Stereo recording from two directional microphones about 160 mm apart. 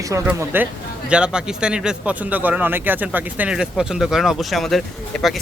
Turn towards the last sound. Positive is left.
turn(degrees=0)  # may be behind; listen again after turning